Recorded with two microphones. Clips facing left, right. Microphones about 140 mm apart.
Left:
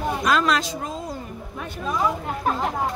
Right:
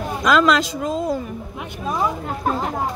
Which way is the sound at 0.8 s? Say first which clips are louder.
Right 9 dB; 80° right.